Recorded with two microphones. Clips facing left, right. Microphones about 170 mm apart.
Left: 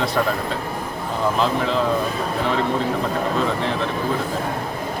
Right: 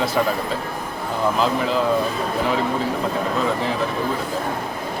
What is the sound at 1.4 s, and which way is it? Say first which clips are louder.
Speech: even; 5° right (ahead or behind).